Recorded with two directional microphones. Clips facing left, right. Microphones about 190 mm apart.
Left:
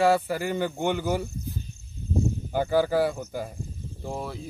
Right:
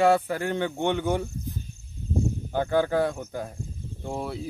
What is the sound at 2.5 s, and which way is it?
Speech, 5° left (ahead or behind).